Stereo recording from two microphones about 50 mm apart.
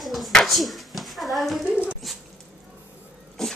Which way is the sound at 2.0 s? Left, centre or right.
Centre.